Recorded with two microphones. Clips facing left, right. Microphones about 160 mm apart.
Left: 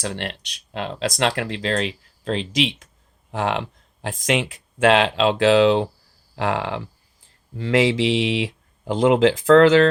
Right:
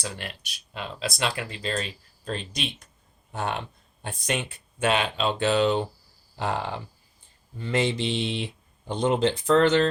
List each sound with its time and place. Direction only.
0.0 s speech: 75° left (ahead or behind)